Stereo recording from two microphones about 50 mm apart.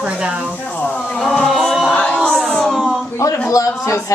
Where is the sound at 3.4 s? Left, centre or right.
Left.